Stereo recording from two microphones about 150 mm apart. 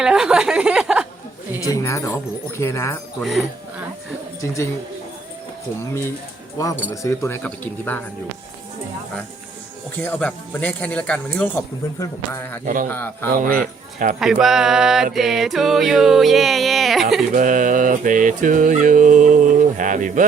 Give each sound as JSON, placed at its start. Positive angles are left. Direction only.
{"t": 0.0, "sound": "music", "side_deg": -5}
{"t": 1.6, "sound": "speech", "side_deg": 20}
{"t": 3.2, "sound": "music", "side_deg": 0}
{"t": 4.4, "sound": "speech", "side_deg": 20}
{"t": 5.8, "sound": "speech", "side_deg": 15}
{"t": 10.0, "sound": "speech", "side_deg": 10}
{"t": 12.6, "sound": "dog", "side_deg": -65}
{"t": 14.2, "sound": "music", "side_deg": -5}
{"t": 17.3, "sound": "dog", "side_deg": -60}